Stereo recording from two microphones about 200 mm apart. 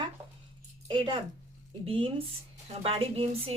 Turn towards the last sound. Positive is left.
turn(degrees=-30)  # may be behind; listen again after turning